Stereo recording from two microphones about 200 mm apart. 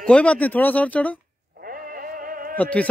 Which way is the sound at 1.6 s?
45° right (ahead or behind).